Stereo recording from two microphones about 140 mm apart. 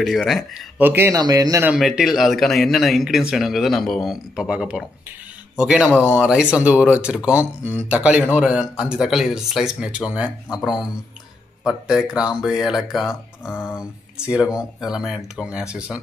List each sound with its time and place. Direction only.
0.0 s speech: centre (ahead or behind)
0.7 s speech: 15° right (ahead or behind)
1.1 s speech: 25° right (ahead or behind)
1.8 s speech: centre (ahead or behind)
5.9 s speech: 15° left (ahead or behind)
6.2 s speech: 5° right (ahead or behind)
13.5 s speech: 15° left (ahead or behind)
13.7 s speech: 5° right (ahead or behind)